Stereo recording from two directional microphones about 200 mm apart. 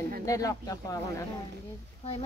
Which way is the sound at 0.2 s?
15° left (ahead or behind).